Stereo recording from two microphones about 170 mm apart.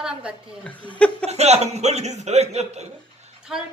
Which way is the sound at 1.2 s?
40° right (ahead or behind).